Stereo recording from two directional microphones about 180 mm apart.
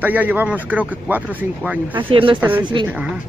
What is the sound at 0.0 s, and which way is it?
Speech, 10° right (ahead or behind).